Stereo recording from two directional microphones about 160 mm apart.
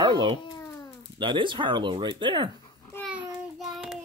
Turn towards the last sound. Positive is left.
turn(degrees=0)  # may be behind; listen again after turning